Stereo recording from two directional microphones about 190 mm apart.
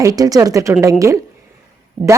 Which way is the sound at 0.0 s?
20° right (ahead or behind).